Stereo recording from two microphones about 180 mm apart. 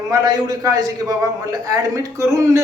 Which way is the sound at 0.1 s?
20° right (ahead or behind).